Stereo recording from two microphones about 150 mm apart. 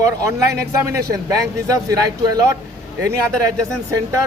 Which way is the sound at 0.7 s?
20° right (ahead or behind).